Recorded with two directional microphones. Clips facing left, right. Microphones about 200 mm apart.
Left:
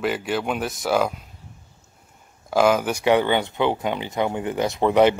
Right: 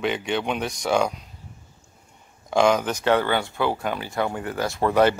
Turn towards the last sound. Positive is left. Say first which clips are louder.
# left 2 dB
turn(degrees=15)  # may be behind; listen again after turning